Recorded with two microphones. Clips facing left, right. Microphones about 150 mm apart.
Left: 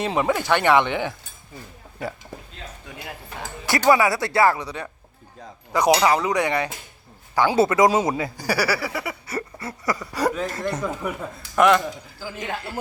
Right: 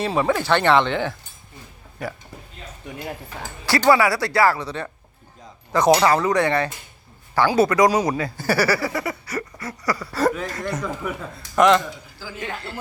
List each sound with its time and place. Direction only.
0.0 s speech: 20° left (ahead or behind)
3.7 s speech: 20° left (ahead or behind)
9.2 s speech: 25° left (ahead or behind)